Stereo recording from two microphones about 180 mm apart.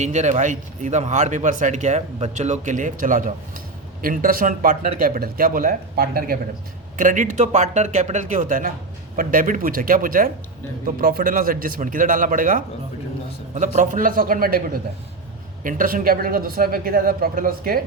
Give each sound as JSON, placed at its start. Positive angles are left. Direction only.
{"t": 0.0, "sound": "a man's voice", "side_deg": -40}
{"t": 13.7, "sound": "a man's voice", "side_deg": -50}